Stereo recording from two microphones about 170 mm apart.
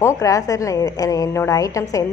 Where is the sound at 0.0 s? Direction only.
20° left (ahead or behind).